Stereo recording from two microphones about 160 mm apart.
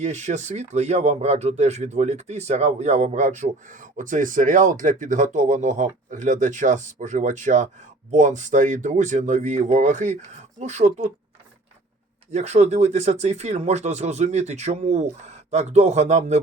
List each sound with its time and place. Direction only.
0.0 s speech: 50° right (ahead or behind)
12.3 s speech: 45° right (ahead or behind)